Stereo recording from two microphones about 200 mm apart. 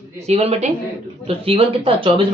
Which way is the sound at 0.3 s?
30° right (ahead or behind).